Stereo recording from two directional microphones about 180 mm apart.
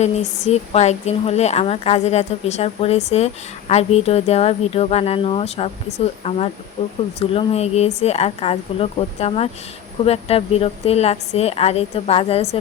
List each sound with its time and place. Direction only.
0.0 s a woman's voice: 40° left (ahead or behind)